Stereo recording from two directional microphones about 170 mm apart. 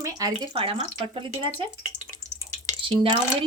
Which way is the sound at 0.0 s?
20° right (ahead or behind).